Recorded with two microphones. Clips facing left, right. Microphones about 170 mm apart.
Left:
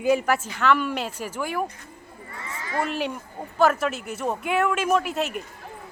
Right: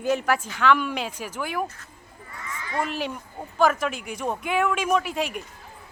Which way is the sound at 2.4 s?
35° left (ahead or behind).